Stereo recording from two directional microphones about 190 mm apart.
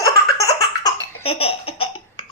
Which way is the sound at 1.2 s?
30° left (ahead or behind).